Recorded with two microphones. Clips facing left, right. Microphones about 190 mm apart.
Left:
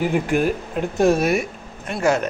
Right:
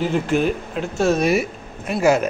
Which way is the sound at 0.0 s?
10° left (ahead or behind).